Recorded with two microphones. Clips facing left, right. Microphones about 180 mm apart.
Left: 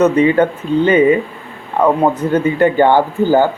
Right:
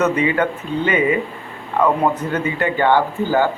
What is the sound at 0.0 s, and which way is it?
Speech, 30° left (ahead or behind).